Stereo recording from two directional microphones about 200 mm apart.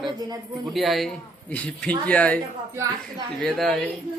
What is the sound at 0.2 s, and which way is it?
Speech, 20° right (ahead or behind).